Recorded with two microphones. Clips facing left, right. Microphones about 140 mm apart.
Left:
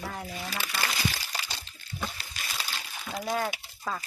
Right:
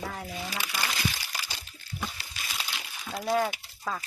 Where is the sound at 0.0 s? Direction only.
Centre (ahead or behind).